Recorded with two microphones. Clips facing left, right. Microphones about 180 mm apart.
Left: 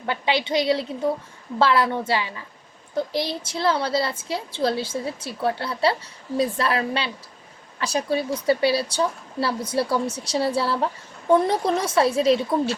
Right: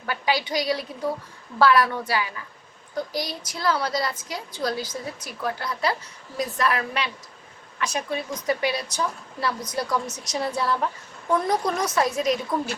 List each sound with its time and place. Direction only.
0.0 s a woman's voice: 25° left (ahead or behind)